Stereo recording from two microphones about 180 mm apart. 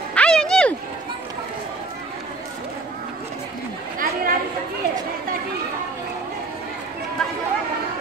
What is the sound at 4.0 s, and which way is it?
Chatter, 50° right (ahead or behind).